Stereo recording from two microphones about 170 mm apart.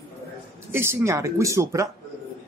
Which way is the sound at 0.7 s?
15° right (ahead or behind).